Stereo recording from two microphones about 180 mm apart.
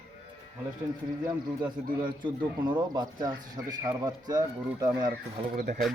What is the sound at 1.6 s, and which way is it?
Speech, 25° right (ahead or behind).